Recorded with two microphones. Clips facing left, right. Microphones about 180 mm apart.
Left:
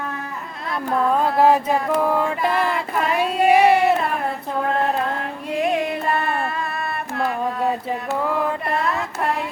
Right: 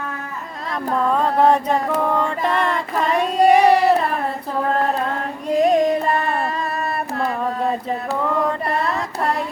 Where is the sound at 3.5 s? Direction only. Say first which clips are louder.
Right 1 dB; 5° left (ahead or behind).